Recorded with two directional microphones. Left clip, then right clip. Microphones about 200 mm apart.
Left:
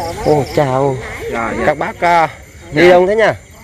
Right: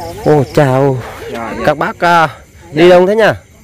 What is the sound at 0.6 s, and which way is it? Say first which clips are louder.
Speech: right 3 dB; 45° right (ahead or behind).